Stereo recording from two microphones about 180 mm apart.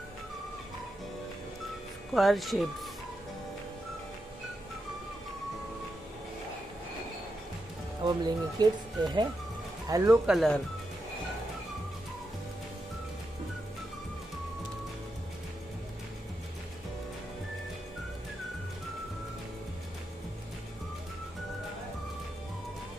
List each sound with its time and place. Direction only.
2.1 s speech: centre (ahead or behind)
8.0 s speech: 25° right (ahead or behind)
10.3 s speech: centre (ahead or behind)